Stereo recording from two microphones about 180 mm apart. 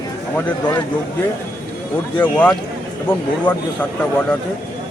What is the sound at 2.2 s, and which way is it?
Speech, 10° left (ahead or behind).